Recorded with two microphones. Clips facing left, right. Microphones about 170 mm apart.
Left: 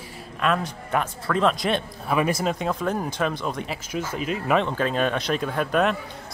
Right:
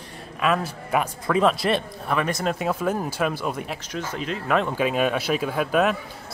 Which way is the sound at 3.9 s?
10° left (ahead or behind).